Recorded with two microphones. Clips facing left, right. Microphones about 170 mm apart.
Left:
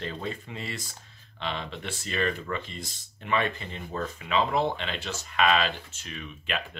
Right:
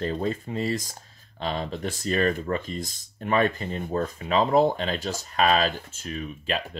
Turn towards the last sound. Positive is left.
turn(degrees=-40)  # may be behind; listen again after turning